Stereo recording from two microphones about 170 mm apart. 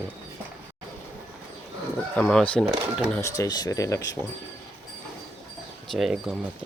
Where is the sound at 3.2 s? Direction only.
20° left (ahead or behind).